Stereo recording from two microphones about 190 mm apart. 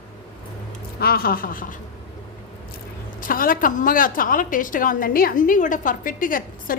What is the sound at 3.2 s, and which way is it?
A woman's voice, 45° left (ahead or behind).